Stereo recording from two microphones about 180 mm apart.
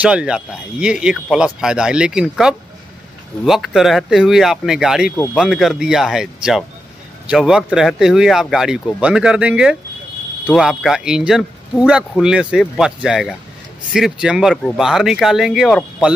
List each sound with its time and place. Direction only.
0.0 s speech: 5° right (ahead or behind)